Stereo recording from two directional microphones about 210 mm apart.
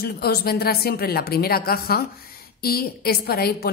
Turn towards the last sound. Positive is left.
turn(degrees=50)  # may be behind; listen again after turning